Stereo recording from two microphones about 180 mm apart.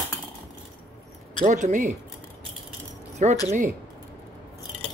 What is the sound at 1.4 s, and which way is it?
Speech, 45° right (ahead or behind).